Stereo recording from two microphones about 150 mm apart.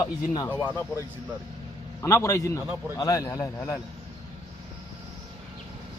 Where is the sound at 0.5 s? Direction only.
15° right (ahead or behind).